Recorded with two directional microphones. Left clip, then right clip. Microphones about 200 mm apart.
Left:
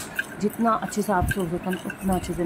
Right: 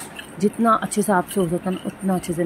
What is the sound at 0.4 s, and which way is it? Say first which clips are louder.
Speech: right 6 dB; 15° right (ahead or behind).